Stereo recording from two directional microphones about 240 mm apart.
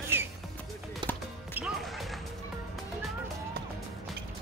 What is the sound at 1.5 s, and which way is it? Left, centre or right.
Music, centre.